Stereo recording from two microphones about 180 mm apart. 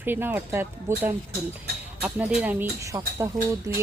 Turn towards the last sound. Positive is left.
turn(degrees=-15)  # may be behind; listen again after turning